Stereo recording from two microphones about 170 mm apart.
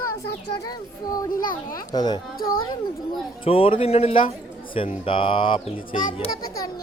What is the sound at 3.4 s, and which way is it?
A child's voice, 35° left (ahead or behind).